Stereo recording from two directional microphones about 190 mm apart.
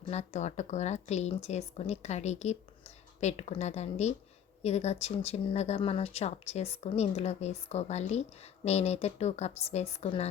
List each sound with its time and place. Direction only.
0.1 s speech: 35° left (ahead or behind)